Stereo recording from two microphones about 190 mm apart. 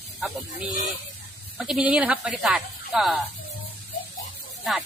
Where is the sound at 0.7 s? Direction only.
45° left (ahead or behind).